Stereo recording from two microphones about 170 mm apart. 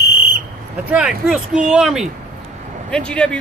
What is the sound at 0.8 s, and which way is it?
A man's voice, 5° right (ahead or behind).